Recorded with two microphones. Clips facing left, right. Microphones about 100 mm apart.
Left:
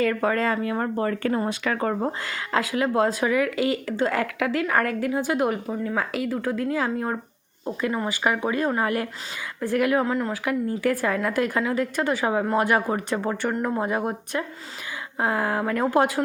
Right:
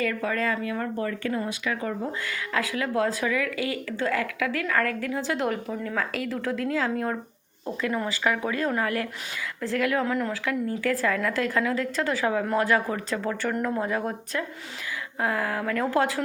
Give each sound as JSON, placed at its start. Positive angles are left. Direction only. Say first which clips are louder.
{"t": 0.0, "sound": "speech", "louder": "left 4 dB", "side_deg": 35}
{"t": 2.2, "sound": "a woman's voice", "louder": "left 3 dB", "side_deg": 30}
{"t": 10.1, "sound": "speech", "louder": "left 2 dB", "side_deg": 30}
{"t": 10.4, "sound": "a woman's voice", "louder": "left 3 dB", "side_deg": 20}